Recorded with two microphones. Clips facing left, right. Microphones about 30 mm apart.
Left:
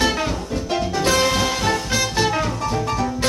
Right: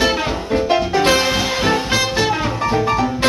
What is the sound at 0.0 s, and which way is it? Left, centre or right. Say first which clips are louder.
Music: right 3 dB; centre.